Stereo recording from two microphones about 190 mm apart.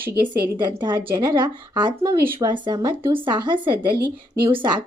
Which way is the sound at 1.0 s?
20° right (ahead or behind).